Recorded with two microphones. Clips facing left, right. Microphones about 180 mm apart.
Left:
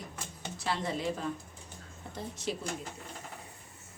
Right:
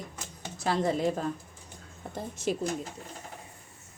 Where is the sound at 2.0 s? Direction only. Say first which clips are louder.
Right 5 dB; 55° right (ahead or behind).